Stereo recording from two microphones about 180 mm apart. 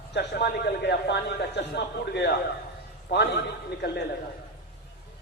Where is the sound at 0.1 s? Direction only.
70° left (ahead or behind).